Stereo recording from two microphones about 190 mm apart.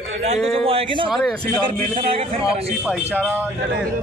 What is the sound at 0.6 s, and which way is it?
Speech, 30° right (ahead or behind).